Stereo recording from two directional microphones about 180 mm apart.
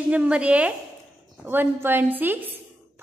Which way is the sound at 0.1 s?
5° right (ahead or behind).